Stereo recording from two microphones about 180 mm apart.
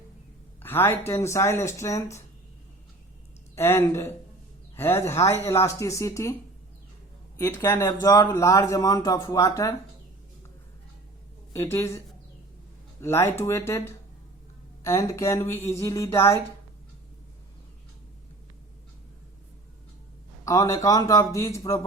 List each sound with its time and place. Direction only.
0.6 s speech: 10° left (ahead or behind)
3.5 s speech: 15° left (ahead or behind)
7.3 s speech: 15° left (ahead or behind)
11.5 s speech: 15° left (ahead or behind)
13.0 s speech: 15° left (ahead or behind)
20.4 s speech: 20° left (ahead or behind)